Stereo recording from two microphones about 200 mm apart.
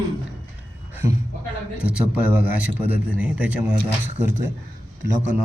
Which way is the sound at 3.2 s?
10° right (ahead or behind).